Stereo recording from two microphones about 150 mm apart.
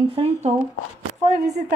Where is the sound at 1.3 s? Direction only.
90° right.